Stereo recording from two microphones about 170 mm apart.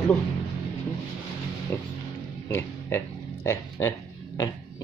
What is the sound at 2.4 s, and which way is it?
Music, 15° left (ahead or behind).